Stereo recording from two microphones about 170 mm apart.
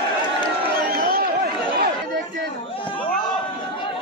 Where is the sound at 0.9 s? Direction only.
60° right (ahead or behind).